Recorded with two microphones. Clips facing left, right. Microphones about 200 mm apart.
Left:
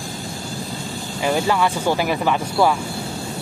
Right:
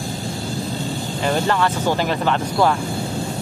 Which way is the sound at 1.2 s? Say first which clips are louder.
Left 1 dB; 10° left (ahead or behind).